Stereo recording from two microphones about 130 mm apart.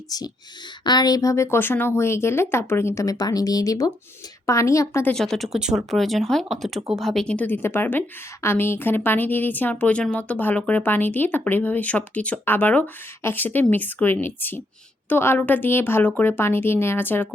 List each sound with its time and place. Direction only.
0.1 s speech: 30° left (ahead or behind)
5.0 s a woman's voice: 5° left (ahead or behind)